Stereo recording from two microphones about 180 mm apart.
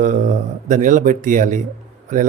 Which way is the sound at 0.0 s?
45° right (ahead or behind).